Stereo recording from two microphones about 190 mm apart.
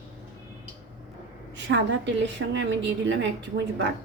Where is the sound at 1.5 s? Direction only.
70° right (ahead or behind).